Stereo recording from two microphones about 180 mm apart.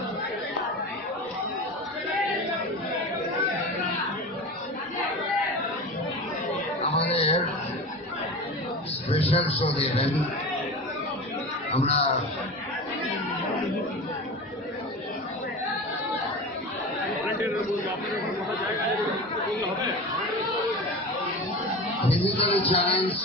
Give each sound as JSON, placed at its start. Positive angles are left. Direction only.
{"t": 7.1, "sound": "a sound", "side_deg": 35}
{"t": 9.1, "sound": "a man's voice", "side_deg": 35}
{"t": 11.7, "sound": "speech", "side_deg": 35}
{"t": 22.0, "sound": "music", "side_deg": 35}